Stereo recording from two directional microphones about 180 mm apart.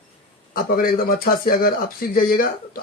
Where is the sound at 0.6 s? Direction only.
55° left (ahead or behind).